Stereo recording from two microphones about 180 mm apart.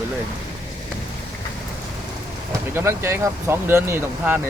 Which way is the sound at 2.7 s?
15° right (ahead or behind).